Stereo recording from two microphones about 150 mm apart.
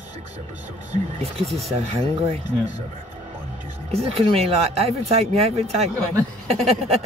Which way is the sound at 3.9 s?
40° right (ahead or behind).